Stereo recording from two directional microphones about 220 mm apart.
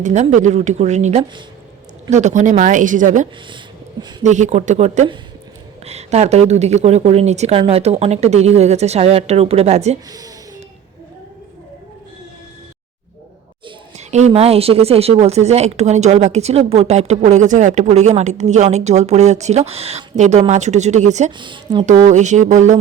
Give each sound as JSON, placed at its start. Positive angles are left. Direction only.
{"t": 0.0, "sound": "a woman's voice", "side_deg": -30}
{"t": 13.7, "sound": "a woman's voice", "side_deg": -30}
{"t": 21.3, "sound": "a woman's voice", "side_deg": -20}
{"t": 21.9, "sound": "a woman's voice", "side_deg": -35}